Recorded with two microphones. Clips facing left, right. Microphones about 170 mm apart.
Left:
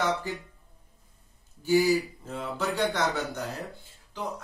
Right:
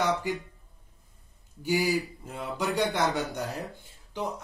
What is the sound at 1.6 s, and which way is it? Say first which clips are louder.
Speech: left 4 dB; 10° right (ahead or behind).